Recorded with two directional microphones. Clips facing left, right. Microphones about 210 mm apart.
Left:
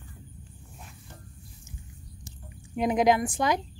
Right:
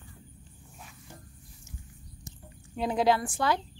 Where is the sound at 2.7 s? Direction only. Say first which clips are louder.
Left 3 dB; 15° left (ahead or behind).